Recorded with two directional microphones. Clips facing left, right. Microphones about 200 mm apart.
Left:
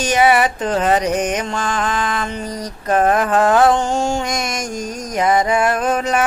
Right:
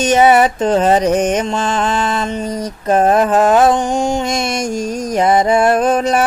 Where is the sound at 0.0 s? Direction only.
30° right (ahead or behind).